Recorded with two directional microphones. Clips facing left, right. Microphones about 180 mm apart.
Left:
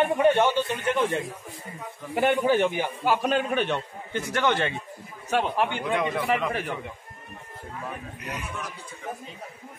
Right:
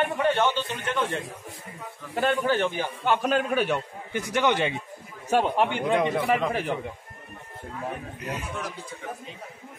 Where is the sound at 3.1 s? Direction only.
Centre (ahead or behind).